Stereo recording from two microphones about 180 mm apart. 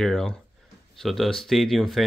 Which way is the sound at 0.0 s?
5° left (ahead or behind).